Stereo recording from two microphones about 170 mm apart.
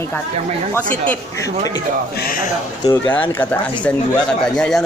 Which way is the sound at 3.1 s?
10° left (ahead or behind).